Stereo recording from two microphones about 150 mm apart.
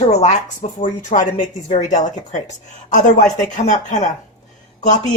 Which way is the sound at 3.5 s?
55° left (ahead or behind).